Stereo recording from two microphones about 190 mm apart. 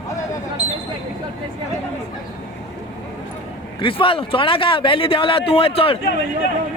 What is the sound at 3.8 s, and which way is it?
Speech, 25° left (ahead or behind).